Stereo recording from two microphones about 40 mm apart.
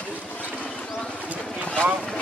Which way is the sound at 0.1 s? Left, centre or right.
Left.